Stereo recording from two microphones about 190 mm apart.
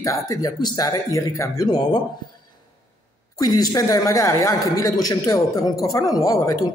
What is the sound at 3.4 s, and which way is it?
A man's voice, 20° left (ahead or behind).